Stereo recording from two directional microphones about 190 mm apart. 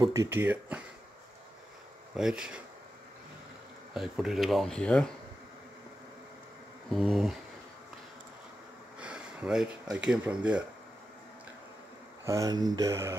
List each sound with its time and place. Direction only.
0.0 s speech: 20° right (ahead or behind)
2.1 s speech: 5° right (ahead or behind)
3.9 s speech: centre (ahead or behind)
6.9 s speech: centre (ahead or behind)
9.0 s a sound: 5° right (ahead or behind)
10.0 s speech: 5° right (ahead or behind)
12.3 s speech: 20° right (ahead or behind)